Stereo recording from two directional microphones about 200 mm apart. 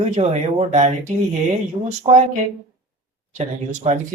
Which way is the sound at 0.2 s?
30° right (ahead or behind).